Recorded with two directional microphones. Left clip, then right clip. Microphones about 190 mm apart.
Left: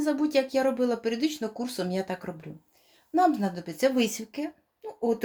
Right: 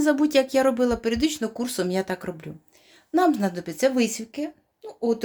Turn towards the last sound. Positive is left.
turn(degrees=-10)  # may be behind; listen again after turning